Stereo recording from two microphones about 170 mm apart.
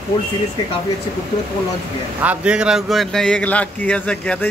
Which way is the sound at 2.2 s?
5° right (ahead or behind).